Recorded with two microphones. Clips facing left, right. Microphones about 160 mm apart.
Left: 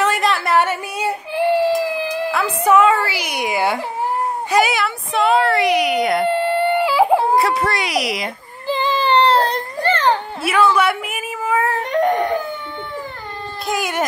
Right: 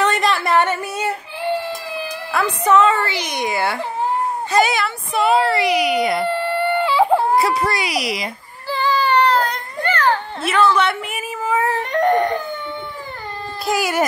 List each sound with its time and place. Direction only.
0.0 s a sound: 5° left (ahead or behind)
2.3 s a child's voice: 5° left (ahead or behind)
6.2 s chicken: 20° left (ahead or behind)
6.8 s a sound: 10° left (ahead or behind)
7.3 s a woman's voice: centre (ahead or behind)
8.6 s child singing: 20° left (ahead or behind)
10.4 s a woman's voice: 10° left (ahead or behind)
11.8 s a sound: 10° left (ahead or behind)
13.7 s a woman's voice: 5° right (ahead or behind)